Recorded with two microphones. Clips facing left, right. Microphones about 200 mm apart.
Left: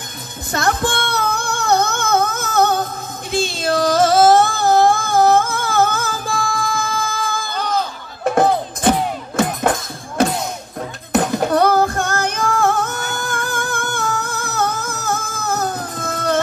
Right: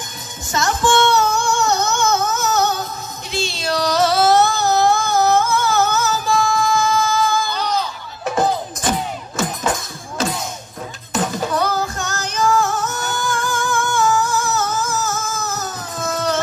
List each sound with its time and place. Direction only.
0.5 s music: 60° left (ahead or behind)